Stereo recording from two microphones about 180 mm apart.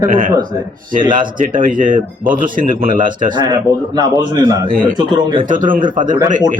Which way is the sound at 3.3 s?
25° right (ahead or behind).